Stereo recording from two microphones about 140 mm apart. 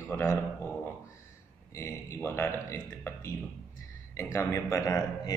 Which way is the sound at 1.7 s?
15° left (ahead or behind).